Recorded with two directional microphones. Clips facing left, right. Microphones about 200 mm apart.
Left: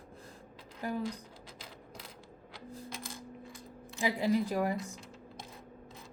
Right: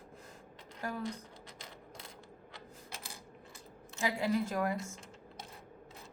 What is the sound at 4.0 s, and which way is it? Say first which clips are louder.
Speech: left 3 dB; 15° left (ahead or behind).